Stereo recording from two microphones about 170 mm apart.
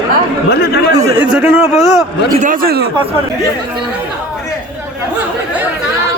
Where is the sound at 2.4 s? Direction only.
55° right (ahead or behind).